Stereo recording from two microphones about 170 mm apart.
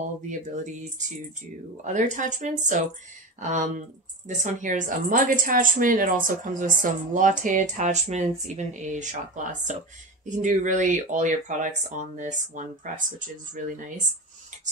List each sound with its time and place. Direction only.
0.3 s speech: 45° right (ahead or behind)